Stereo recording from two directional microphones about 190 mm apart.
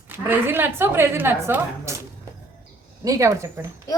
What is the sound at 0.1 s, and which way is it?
A woman's voice, 10° right (ahead or behind).